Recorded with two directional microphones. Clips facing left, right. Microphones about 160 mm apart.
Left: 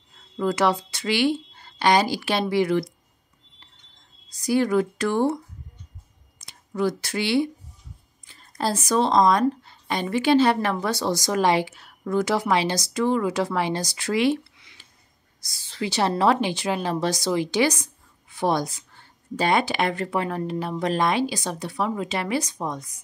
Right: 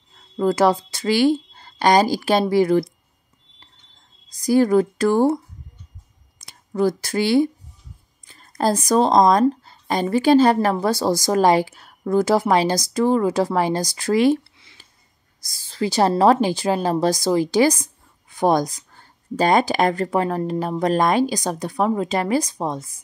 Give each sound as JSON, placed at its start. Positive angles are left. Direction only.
{"t": 0.4, "sound": "a woman's voice", "side_deg": -35}
{"t": 4.5, "sound": "speech", "side_deg": -40}
{"t": 6.7, "sound": "speech", "side_deg": -40}
{"t": 8.3, "sound": "a sound", "side_deg": -45}
{"t": 8.8, "sound": "speech", "side_deg": -40}
{"t": 14.6, "sound": "a sound", "side_deg": -30}
{"t": 15.8, "sound": "speech", "side_deg": -40}